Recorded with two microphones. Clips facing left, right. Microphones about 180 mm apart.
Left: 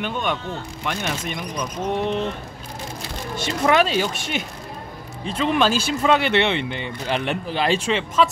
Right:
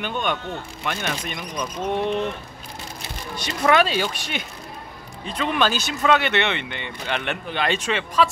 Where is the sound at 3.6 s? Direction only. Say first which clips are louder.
Even; centre (ahead or behind).